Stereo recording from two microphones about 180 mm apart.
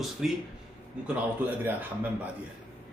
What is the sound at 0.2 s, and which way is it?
Speech, 5° right (ahead or behind).